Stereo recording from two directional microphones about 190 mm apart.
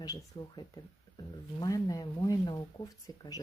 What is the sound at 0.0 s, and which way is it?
Speech, 20° left (ahead or behind).